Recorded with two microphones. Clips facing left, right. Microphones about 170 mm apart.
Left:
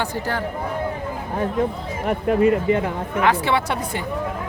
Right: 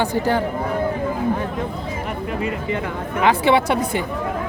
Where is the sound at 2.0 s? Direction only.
50° left (ahead or behind).